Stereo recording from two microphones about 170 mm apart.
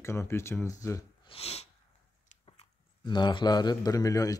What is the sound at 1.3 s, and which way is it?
Sneeze, 35° left (ahead or behind).